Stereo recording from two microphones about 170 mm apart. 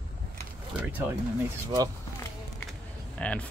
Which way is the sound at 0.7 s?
10° right (ahead or behind).